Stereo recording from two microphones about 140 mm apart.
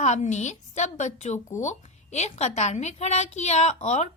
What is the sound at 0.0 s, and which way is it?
A woman's voice, 55° left (ahead or behind).